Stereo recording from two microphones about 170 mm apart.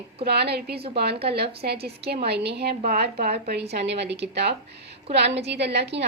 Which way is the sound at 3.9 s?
90° right.